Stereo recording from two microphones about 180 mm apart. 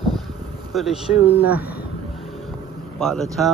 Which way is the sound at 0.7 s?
Centre (ahead or behind).